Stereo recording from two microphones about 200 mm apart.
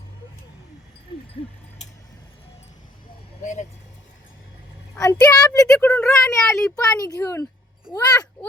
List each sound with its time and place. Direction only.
3.4 s vehicle: 35° left (ahead or behind)
4.9 s a sound: 15° left (ahead or behind)
5.3 s a woman's voice: 20° left (ahead or behind)
5.6 s speech: 5° left (ahead or behind)
6.7 s a woman's voice: 20° left (ahead or behind)